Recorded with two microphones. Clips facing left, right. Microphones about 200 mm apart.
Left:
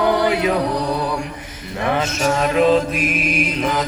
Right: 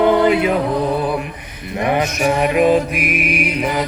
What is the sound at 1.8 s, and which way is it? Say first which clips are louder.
Music: right 2 dB; 15° right (ahead or behind).